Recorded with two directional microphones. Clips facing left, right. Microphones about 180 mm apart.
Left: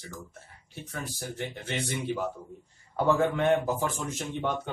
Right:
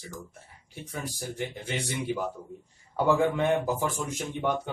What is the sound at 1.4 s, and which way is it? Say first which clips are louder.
Speech: even; 15° right (ahead or behind).